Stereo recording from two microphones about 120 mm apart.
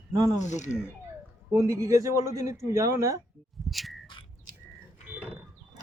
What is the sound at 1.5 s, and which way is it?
Speech, 25° right (ahead or behind).